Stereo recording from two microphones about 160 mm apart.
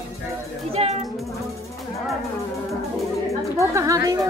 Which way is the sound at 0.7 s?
40° right (ahead or behind).